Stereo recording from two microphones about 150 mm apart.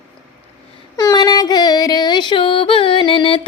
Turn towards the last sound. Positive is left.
turn(degrees=35)  # may be behind; listen again after turning